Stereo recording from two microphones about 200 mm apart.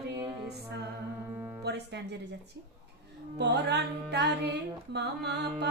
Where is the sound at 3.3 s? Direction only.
55° right (ahead or behind).